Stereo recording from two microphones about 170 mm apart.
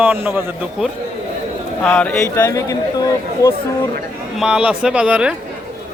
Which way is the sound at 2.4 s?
20° left (ahead or behind).